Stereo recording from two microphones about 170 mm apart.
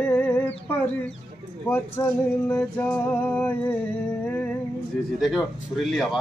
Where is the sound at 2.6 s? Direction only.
5° left (ahead or behind).